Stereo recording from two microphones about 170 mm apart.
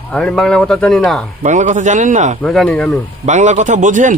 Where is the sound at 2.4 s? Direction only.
5° left (ahead or behind).